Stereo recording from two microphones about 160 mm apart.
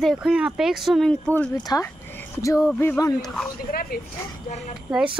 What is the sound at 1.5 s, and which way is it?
Speech, 20° left (ahead or behind).